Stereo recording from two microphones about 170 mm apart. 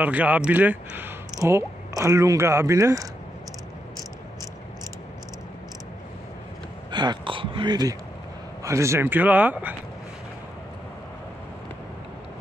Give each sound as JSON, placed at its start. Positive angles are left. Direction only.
{"t": 0.0, "sound": "speech", "side_deg": -10}
{"t": 6.9, "sound": "a sound", "side_deg": -25}
{"t": 8.6, "sound": "speech", "side_deg": -15}